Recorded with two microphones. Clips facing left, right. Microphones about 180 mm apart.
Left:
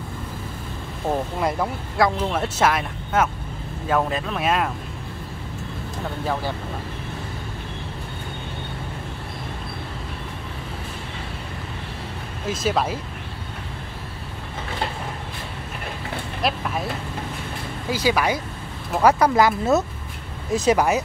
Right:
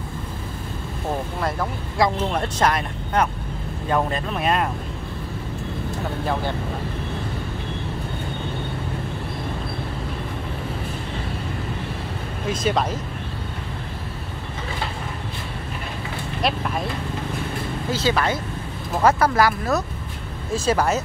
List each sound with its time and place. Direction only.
2.0 s speech: centre (ahead or behind)
12.4 s speech: 5° left (ahead or behind)
16.4 s speech: centre (ahead or behind)
17.8 s speech: 10° left (ahead or behind)